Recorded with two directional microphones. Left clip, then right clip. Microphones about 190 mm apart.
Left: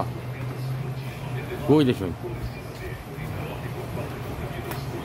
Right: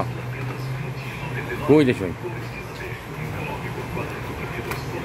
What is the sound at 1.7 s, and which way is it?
Speech, 10° left (ahead or behind).